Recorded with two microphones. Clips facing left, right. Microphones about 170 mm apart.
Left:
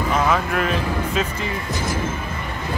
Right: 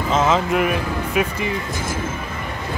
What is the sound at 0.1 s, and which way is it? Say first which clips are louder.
Speech: right 4 dB; 20° right (ahead or behind).